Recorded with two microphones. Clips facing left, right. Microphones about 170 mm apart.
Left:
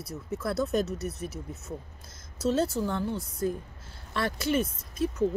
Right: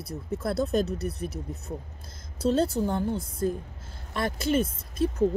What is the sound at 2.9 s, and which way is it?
Speech, 40° right (ahead or behind).